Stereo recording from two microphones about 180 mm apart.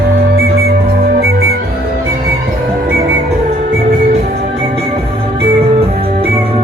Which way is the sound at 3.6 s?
50° right (ahead or behind).